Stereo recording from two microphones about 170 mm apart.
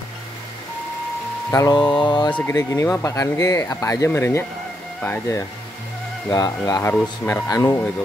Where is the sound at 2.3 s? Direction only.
15° left (ahead or behind).